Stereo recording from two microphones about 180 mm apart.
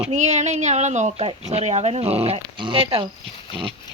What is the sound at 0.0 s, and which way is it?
Speech, 40° right (ahead or behind).